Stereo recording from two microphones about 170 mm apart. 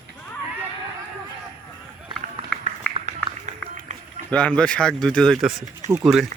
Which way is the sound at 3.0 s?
45° right (ahead or behind).